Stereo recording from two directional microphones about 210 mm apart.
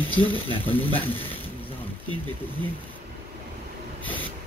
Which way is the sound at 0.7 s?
10° left (ahead or behind).